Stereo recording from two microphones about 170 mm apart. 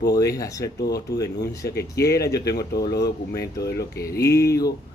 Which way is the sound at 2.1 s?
20° left (ahead or behind).